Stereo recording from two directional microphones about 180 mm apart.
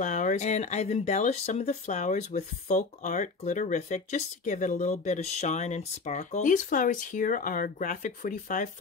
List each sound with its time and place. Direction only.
0.0 s speech: 45° left (ahead or behind)